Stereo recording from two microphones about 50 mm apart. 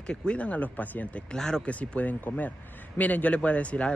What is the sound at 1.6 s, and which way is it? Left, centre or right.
Speech, left.